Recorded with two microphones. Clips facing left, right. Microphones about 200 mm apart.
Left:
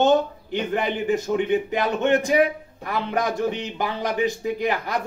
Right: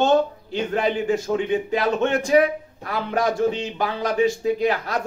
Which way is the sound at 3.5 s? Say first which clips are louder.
Right 2 dB; 15° left (ahead or behind).